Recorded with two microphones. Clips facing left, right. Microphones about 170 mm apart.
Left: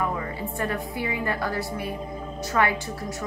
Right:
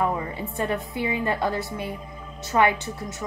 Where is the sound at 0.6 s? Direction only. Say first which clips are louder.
Right 3 dB; 20° right (ahead or behind).